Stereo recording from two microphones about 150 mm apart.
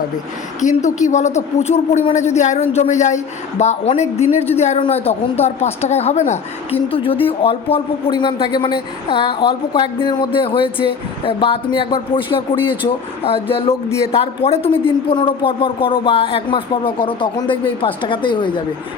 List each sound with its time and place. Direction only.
0.6 s speech: 55° left (ahead or behind); by 18.6 s 35° left (ahead or behind)